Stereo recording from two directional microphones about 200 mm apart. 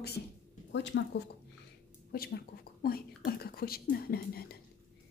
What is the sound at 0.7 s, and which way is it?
Speech, 60° left (ahead or behind).